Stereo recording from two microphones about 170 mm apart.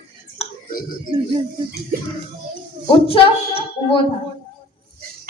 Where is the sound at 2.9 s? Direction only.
35° left (ahead or behind).